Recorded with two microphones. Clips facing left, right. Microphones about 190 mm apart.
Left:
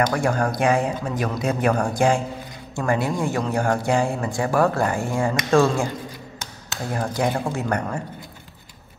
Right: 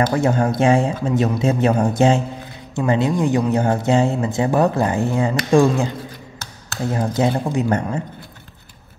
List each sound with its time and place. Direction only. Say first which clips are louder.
0.1 s speech: right 4 dB; 25° right (ahead or behind)
6.9 s speech: right 4 dB; 20° right (ahead or behind)